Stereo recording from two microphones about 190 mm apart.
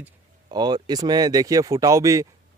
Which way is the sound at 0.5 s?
20° right (ahead or behind).